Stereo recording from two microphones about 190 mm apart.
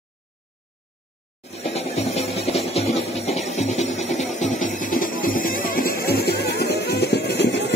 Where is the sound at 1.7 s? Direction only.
35° left (ahead or behind).